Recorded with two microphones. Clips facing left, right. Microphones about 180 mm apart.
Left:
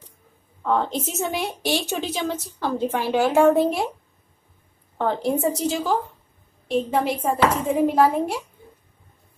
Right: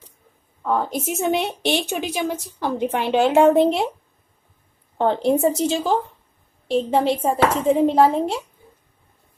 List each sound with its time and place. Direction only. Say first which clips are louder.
0.6 s a woman's voice: even; 5° right (ahead or behind)
4.9 s a woman's voice: right 4 dB; 30° right (ahead or behind)